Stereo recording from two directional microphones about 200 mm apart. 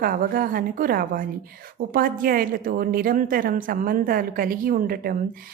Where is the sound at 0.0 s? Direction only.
45° right (ahead or behind).